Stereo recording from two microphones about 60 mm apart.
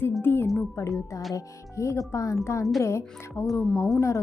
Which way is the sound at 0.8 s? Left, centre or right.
Left.